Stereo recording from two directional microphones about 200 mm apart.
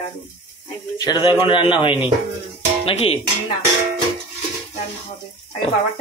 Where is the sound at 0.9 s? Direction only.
20° left (ahead or behind).